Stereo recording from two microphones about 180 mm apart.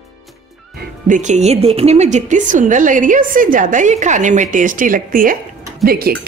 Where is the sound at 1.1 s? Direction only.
40° right (ahead or behind).